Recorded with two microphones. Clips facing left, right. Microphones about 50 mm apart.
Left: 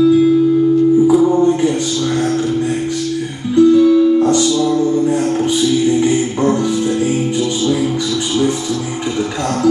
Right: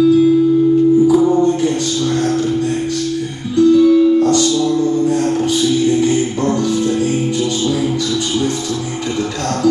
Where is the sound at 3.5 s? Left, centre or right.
Centre.